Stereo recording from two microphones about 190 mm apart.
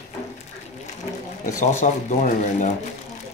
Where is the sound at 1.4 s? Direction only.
40° left (ahead or behind).